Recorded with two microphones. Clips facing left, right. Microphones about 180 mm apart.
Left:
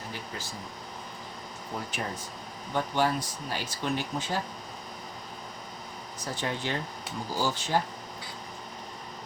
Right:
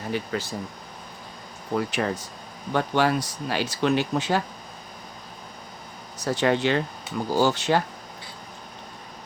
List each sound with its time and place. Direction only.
0.1 s speech: 70° right (ahead or behind)
1.7 s speech: 75° right (ahead or behind)
6.1 s speech: 75° right (ahead or behind)